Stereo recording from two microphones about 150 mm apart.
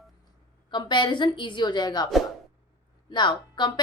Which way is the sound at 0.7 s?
30° left (ahead or behind).